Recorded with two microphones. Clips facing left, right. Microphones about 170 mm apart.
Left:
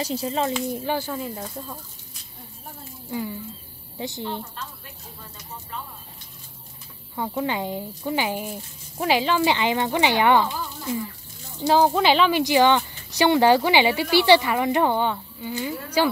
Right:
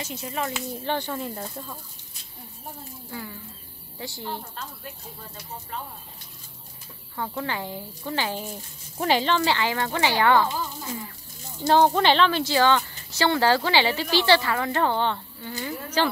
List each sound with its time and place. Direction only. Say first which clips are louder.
0.0 s speech: left 6 dB; 30° left (ahead or behind)
0.8 s speech: left 2 dB; 5° left (ahead or behind)
3.1 s a sound: left 8 dB; 20° left (ahead or behind)
4.0 s a woman's voice: left 4 dB; 20° left (ahead or behind)
7.2 s speech: left 4 dB; 15° left (ahead or behind)
8.5 s speech: left 3 dB; centre (ahead or behind); by 10.5 s 20° left (ahead or behind)
11.6 s speech: left 1 dB; 5° left (ahead or behind)